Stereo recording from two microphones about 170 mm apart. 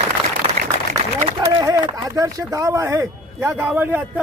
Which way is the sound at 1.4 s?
20° right (ahead or behind).